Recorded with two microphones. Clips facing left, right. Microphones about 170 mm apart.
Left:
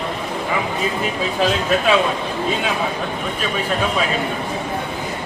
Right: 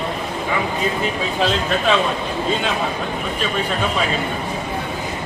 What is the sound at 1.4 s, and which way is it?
Speech, 5° left (ahead or behind).